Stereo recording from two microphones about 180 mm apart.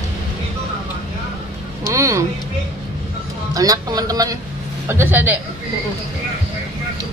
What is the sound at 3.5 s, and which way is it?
A man's voice, 20° right (ahead or behind).